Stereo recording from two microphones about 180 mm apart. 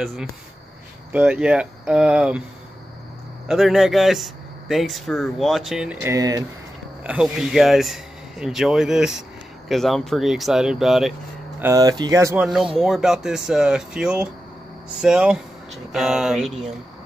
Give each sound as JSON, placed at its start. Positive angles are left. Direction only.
{"t": 0.0, "sound": "speech", "side_deg": 0}
{"t": 3.4, "sound": "speech", "side_deg": 0}
{"t": 7.0, "sound": "speech", "side_deg": -5}
{"t": 11.6, "sound": "speech", "side_deg": -20}
{"t": 12.7, "sound": "speech", "side_deg": 0}